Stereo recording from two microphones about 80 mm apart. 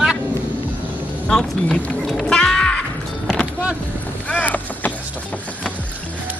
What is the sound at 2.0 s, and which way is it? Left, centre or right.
Music, centre.